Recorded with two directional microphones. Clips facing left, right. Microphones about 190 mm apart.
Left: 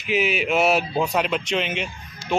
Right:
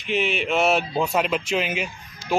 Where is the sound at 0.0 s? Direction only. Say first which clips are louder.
Left 2 dB; 5° left (ahead or behind).